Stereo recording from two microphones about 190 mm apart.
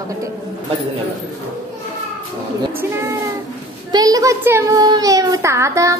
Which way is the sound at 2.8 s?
15° right (ahead or behind).